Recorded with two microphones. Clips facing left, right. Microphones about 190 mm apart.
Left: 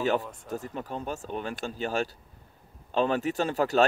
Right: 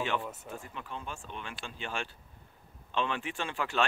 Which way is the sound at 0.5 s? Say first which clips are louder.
Left 8 dB; 40° left (ahead or behind).